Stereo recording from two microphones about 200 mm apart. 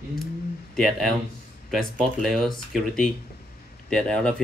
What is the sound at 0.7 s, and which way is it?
Speech, centre (ahead or behind).